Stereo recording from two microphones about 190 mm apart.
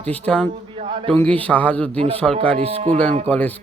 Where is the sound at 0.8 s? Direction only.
25° right (ahead or behind).